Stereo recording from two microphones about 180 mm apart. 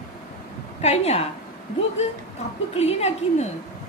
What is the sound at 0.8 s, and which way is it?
Speech, 35° left (ahead or behind).